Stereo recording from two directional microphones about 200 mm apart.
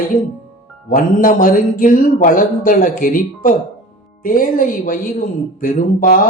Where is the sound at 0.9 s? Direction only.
45° left (ahead or behind).